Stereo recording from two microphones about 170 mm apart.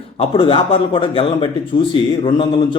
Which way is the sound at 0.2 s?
30° left (ahead or behind).